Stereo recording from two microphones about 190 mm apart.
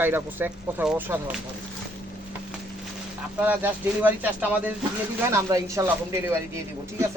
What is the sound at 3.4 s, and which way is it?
Speech, 10° right (ahead or behind).